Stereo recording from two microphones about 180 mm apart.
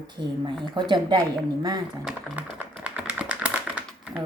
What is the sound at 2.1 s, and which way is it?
Typing, 10° right (ahead or behind).